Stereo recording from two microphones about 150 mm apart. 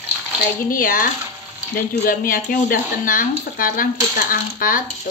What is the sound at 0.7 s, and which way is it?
Speech, 70° left (ahead or behind).